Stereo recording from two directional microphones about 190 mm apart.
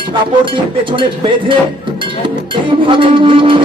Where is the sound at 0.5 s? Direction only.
25° right (ahead or behind).